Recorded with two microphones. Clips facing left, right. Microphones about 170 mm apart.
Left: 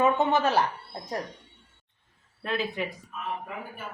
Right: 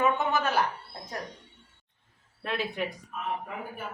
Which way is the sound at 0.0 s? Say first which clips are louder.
Left 3 dB; 30° left (ahead or behind).